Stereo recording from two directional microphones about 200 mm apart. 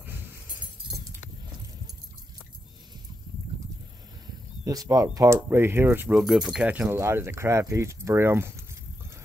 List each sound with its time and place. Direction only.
0.8 s keys jangling: 20° right (ahead or behind)
4.6 s speech: 20° right (ahead or behind)